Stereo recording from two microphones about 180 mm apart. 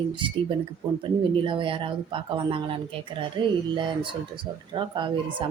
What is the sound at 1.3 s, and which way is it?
A woman's voice, 30° right (ahead or behind).